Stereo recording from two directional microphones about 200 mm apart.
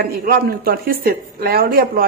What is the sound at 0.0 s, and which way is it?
A woman's voice, 50° right (ahead or behind).